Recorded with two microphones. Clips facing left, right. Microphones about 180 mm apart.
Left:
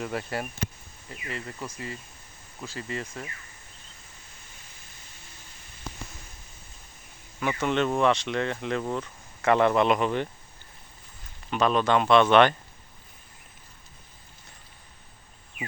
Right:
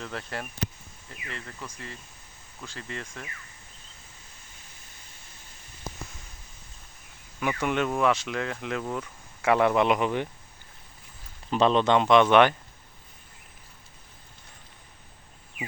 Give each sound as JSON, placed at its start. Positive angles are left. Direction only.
{"t": 0.0, "sound": "speech", "side_deg": 10}
{"t": 7.3, "sound": "a man's voice", "side_deg": -10}
{"t": 11.5, "sound": "a man's voice", "side_deg": -25}